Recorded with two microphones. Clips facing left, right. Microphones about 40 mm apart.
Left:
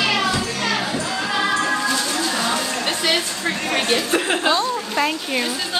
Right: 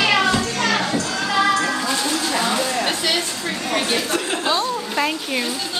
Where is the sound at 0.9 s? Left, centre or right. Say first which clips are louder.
Right 2 dB; left.